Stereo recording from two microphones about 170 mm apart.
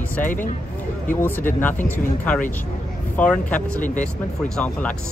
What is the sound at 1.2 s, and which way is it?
Speech, 10° left (ahead or behind).